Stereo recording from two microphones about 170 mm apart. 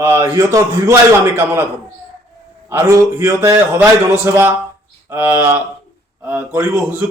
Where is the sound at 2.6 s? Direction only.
15° right (ahead or behind).